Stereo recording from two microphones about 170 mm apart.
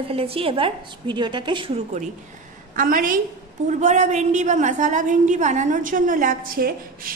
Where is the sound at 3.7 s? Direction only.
45° right (ahead or behind); by 7.1 s 60° right (ahead or behind).